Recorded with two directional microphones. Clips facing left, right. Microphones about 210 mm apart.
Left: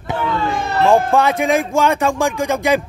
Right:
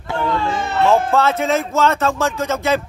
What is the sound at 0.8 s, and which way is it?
Speech, 15° left (ahead or behind).